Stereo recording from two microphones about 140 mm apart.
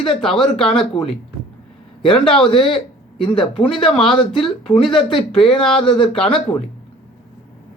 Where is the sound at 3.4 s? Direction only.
5° left (ahead or behind).